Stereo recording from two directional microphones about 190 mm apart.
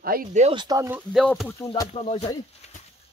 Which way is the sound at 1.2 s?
10° left (ahead or behind).